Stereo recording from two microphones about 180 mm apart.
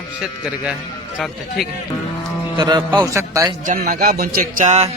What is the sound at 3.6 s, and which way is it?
Music, 50° right (ahead or behind).